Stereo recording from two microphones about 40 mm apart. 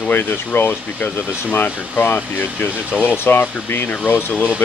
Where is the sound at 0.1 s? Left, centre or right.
Left.